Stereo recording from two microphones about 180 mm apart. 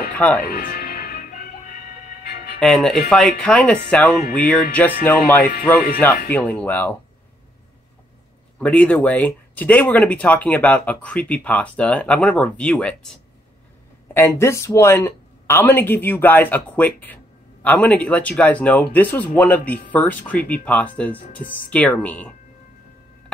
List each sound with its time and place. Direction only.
0.5 s music: 55° left (ahead or behind)
2.6 s speech: 5° left (ahead or behind)
8.5 s speech: 5° left (ahead or behind)
14.1 s speech: 15° left (ahead or behind)